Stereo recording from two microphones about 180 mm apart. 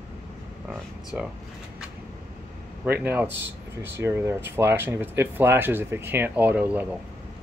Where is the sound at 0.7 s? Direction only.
5° right (ahead or behind).